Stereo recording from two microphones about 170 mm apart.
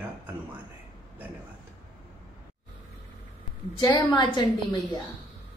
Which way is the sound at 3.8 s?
25° left (ahead or behind).